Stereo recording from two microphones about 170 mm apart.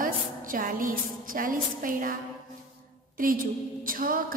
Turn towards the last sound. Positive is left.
turn(degrees=-55)  # may be behind; listen again after turning